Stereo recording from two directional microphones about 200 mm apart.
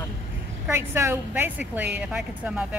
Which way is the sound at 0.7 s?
15° right (ahead or behind).